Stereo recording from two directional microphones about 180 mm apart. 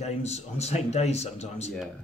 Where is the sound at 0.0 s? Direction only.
35° left (ahead or behind).